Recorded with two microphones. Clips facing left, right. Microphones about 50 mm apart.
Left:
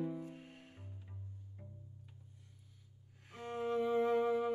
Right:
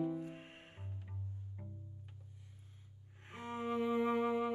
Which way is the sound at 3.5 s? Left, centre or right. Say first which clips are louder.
Left 1 dB; centre.